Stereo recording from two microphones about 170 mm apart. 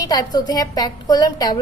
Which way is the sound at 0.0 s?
20° left (ahead or behind).